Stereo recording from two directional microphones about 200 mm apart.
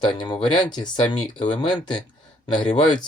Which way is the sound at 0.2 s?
20° left (ahead or behind).